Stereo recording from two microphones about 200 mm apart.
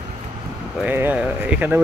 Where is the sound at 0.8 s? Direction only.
10° right (ahead or behind).